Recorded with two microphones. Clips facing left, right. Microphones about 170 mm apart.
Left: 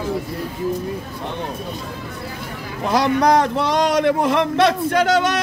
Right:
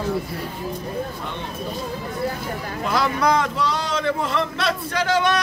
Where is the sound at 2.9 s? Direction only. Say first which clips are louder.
Left 5 dB; 40° left (ahead or behind).